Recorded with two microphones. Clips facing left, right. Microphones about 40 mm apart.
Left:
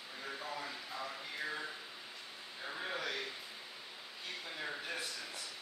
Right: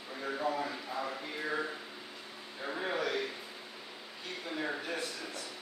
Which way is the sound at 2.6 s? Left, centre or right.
Right.